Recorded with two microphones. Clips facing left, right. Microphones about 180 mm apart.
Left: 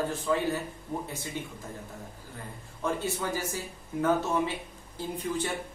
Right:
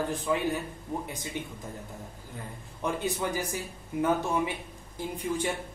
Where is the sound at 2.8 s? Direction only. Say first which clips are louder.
Right 1 dB; 15° right (ahead or behind).